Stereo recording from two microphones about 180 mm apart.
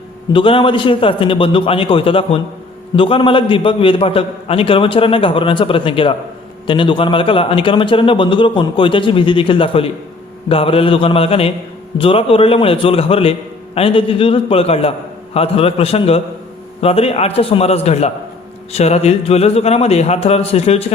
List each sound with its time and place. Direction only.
0.3 s a man's voice: 30° left (ahead or behind)